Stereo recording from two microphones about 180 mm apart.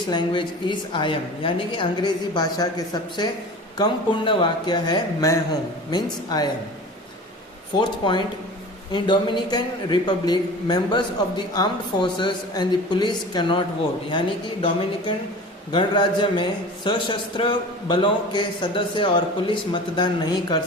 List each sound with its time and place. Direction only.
0.1 s a man's voice: 25° left (ahead or behind)
7.8 s a man's voice: 25° left (ahead or behind)